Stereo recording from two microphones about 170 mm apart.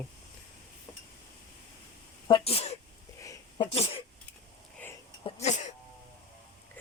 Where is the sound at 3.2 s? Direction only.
25° left (ahead or behind).